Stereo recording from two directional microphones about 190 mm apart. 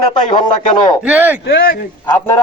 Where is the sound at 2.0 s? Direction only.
15° left (ahead or behind).